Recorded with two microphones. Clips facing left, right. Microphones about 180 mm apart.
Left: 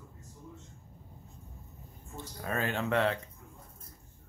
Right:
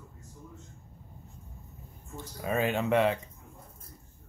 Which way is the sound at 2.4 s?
15° right (ahead or behind).